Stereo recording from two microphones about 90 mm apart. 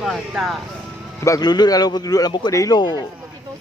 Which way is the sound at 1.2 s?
45° left (ahead or behind).